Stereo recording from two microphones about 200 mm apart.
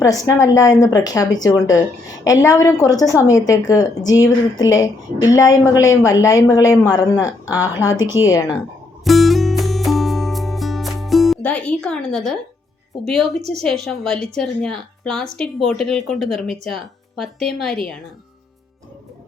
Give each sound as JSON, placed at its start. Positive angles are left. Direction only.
{"t": 0.0, "sound": "a woman's voice", "side_deg": 15}
{"t": 9.0, "sound": "music", "side_deg": 0}
{"t": 13.1, "sound": "a woman's voice", "side_deg": 0}